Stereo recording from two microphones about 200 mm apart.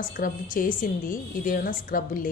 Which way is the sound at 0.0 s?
45° left (ahead or behind).